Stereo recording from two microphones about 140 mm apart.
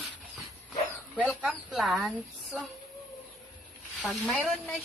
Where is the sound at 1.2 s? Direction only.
5° right (ahead or behind).